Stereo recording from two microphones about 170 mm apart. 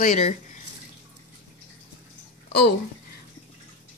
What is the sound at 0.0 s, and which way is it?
Speech, 55° left (ahead or behind).